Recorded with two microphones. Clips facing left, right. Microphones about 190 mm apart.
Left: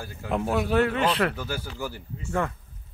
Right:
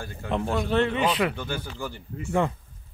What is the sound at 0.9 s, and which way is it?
Speech, 5° right (ahead or behind).